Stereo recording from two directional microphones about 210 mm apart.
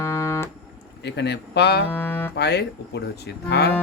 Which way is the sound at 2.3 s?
50° left (ahead or behind).